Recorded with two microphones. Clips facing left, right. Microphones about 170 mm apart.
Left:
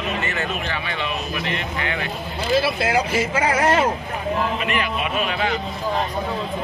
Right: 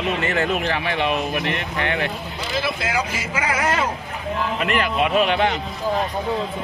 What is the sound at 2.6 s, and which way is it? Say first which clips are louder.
Speech: left 3 dB; 30° left (ahead or behind).